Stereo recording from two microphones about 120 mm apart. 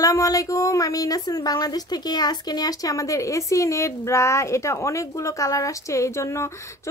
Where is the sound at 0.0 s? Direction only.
30° left (ahead or behind).